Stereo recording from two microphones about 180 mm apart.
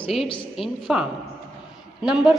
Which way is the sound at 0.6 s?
Centre (ahead or behind).